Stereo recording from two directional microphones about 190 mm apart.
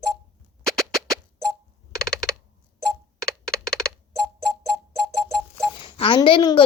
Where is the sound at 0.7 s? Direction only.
Centre (ahead or behind).